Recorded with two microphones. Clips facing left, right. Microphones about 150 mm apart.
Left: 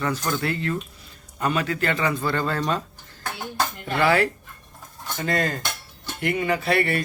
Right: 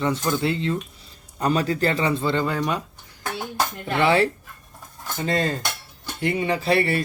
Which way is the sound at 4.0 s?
25° right (ahead or behind).